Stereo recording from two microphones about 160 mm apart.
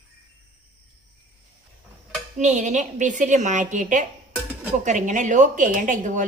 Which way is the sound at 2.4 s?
50° right (ahead or behind).